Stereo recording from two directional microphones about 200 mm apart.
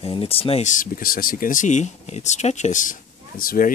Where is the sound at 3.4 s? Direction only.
45° left (ahead or behind).